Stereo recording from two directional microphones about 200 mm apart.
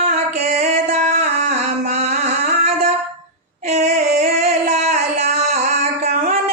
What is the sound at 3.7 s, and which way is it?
Singing, 35° right (ahead or behind).